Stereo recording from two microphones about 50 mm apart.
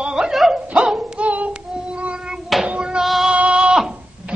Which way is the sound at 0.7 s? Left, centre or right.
Centre.